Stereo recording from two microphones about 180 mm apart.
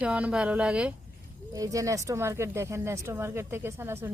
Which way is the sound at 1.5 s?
20° right (ahead or behind).